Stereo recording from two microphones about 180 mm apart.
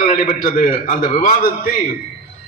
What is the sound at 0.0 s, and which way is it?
A man's voice, 50° left (ahead or behind).